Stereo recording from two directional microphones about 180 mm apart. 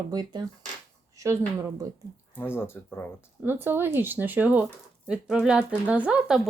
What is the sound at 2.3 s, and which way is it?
Speech, 10° left (ahead or behind).